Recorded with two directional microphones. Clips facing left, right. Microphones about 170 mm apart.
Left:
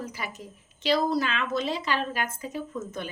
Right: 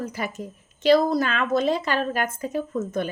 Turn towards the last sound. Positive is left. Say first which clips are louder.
# right 7 dB
turn(degrees=-50)  # may be behind; listen again after turning